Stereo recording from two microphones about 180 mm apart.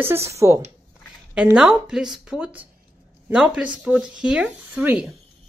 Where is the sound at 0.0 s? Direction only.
15° right (ahead or behind).